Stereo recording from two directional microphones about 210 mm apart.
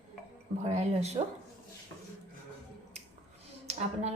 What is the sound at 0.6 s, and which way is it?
Speech, 30° right (ahead or behind).